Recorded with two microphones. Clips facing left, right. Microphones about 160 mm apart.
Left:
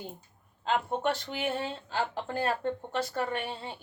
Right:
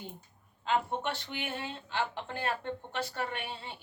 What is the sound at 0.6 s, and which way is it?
A woman's voice, 40° left (ahead or behind).